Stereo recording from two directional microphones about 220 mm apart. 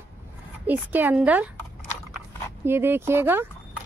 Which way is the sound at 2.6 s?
10° right (ahead or behind).